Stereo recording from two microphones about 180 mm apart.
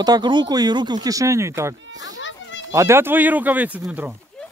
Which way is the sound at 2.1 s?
90° left.